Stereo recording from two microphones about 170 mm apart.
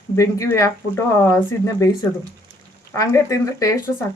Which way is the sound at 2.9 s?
15° left (ahead or behind).